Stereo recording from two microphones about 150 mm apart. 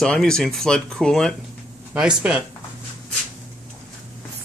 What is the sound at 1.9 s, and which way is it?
Speech, 5° right (ahead or behind).